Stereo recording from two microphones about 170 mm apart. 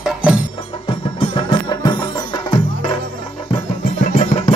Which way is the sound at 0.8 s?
30° left (ahead or behind).